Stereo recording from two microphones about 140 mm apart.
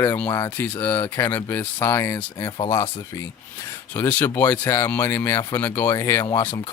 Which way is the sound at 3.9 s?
15° left (ahead or behind).